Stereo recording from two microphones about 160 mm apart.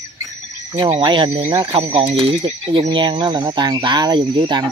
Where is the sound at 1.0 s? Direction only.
30° right (ahead or behind).